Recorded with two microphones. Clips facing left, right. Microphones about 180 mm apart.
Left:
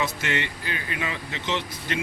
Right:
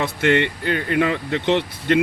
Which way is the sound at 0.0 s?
60° right (ahead or behind).